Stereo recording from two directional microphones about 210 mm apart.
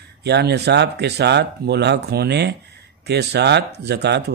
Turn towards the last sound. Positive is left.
turn(degrees=-55)  # may be behind; listen again after turning